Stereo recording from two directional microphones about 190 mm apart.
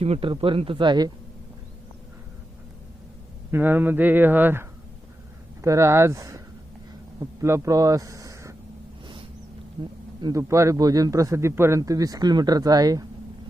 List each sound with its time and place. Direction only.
0.0 s a man's voice: 30° right (ahead or behind)
3.5 s speech: 10° right (ahead or behind)
5.6 s speech: 15° right (ahead or behind)
10.2 s a man's voice: 15° right (ahead or behind)